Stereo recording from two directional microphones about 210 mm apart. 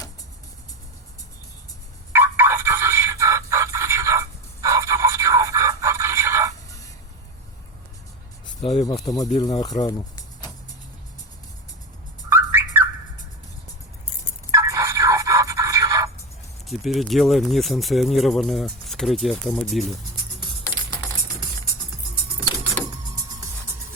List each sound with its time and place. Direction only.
2.1 s music: 10° right (ahead or behind)
9.1 s speech: 30° left (ahead or behind)
9.4 s speech: 15° left (ahead or behind)
9.8 s music: 20° left (ahead or behind)
12.3 s car alarm: 10° right (ahead or behind)
14.5 s music: 15° right (ahead or behind)
16.6 s speech: centre (ahead or behind)